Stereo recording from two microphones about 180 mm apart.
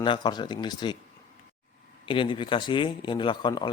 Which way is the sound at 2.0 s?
30° left (ahead or behind).